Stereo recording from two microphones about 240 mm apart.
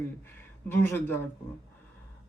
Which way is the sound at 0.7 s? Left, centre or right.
Centre.